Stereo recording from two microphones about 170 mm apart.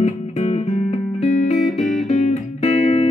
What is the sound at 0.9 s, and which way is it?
Music, 40° left (ahead or behind).